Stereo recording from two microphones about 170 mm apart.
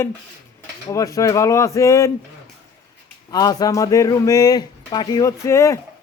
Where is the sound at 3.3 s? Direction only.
20° left (ahead or behind).